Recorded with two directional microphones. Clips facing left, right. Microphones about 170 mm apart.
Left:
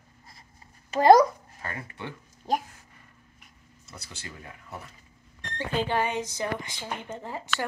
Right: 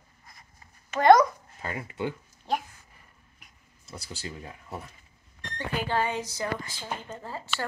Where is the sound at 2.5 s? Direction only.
40° left (ahead or behind).